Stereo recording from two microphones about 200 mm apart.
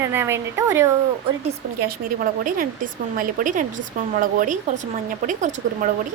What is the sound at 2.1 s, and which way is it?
Speech, 45° right (ahead or behind).